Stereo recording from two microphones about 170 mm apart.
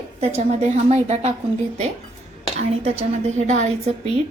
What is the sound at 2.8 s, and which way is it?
A woman's voice, 40° right (ahead or behind).